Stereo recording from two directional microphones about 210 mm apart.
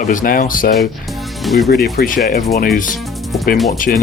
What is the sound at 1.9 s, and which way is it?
Speech, 40° left (ahead or behind).